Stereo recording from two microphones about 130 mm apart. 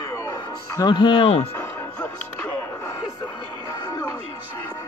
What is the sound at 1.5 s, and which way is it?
Music, 10° left (ahead or behind).